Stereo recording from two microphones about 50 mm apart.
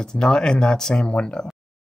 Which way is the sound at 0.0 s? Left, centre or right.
Centre.